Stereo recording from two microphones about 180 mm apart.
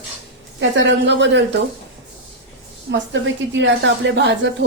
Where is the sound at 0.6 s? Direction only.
80° right.